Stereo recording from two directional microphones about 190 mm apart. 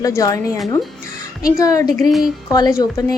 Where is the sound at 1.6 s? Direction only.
15° left (ahead or behind).